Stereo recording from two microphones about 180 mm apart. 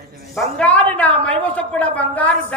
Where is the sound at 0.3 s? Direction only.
5° left (ahead or behind).